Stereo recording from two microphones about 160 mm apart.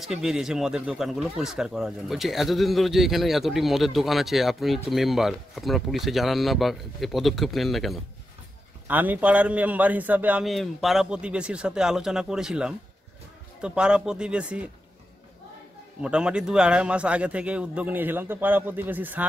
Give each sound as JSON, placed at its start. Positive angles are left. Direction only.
{"t": 0.0, "sound": "speech", "side_deg": 0}
{"t": 8.8, "sound": "a man's voice", "side_deg": -10}
{"t": 16.0, "sound": "a man's voice", "side_deg": -5}